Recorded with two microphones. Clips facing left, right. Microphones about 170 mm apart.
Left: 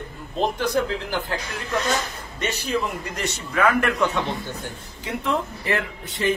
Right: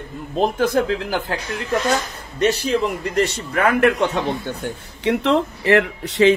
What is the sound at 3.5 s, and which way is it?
Speech, 30° right (ahead or behind).